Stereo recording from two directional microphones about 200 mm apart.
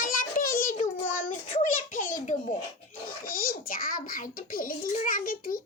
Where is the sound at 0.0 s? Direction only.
45° left (ahead or behind).